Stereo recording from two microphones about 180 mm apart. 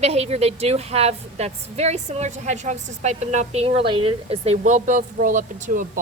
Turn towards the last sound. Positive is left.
turn(degrees=-45)  # may be behind; listen again after turning